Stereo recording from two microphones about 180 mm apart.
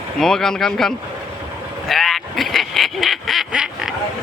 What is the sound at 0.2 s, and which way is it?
Speech, centre (ahead or behind).